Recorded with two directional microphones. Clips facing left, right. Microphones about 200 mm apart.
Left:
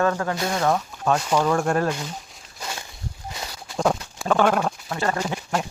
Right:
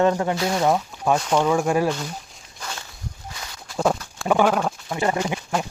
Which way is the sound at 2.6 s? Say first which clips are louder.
Left 1 dB; 20° left (ahead or behind).